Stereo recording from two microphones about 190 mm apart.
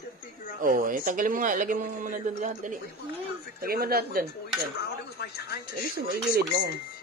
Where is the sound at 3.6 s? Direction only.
50° right (ahead or behind).